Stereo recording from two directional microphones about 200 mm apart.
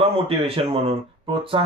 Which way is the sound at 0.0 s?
30° right (ahead or behind).